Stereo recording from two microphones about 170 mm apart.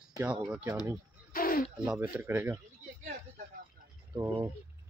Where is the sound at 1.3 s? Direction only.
55° left (ahead or behind).